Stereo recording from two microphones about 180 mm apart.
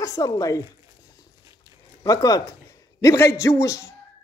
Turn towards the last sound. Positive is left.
turn(degrees=15)  # may be behind; listen again after turning